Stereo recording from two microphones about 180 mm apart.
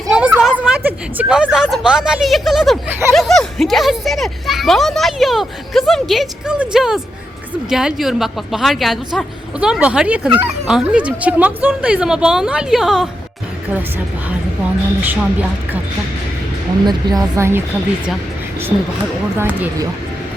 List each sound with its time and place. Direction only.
0.1 s a sound: 5° right (ahead or behind)
0.9 s a woman's voice: 5° right (ahead or behind)
14.3 s a woman's voice: 10° right (ahead or behind)
16.8 s a woman's voice: 20° right (ahead or behind)
19.4 s speech: 10° right (ahead or behind)